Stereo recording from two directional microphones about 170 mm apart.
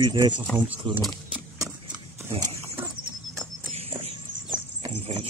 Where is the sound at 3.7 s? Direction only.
40° right (ahead or behind).